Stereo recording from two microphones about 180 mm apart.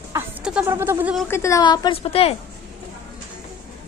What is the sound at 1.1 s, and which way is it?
A woman's voice, 10° left (ahead or behind).